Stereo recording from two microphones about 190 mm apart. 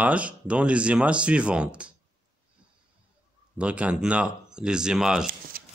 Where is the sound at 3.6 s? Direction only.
5° right (ahead or behind).